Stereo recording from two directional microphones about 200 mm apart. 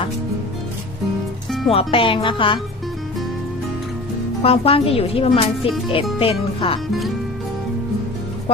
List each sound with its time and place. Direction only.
1.5 s music: centre (ahead or behind)
1.7 s speech: 25° left (ahead or behind)
4.4 s speech: 30° left (ahead or behind)